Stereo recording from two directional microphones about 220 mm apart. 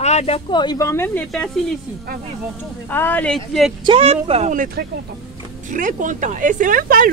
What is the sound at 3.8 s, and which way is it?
Speech, 25° right (ahead or behind).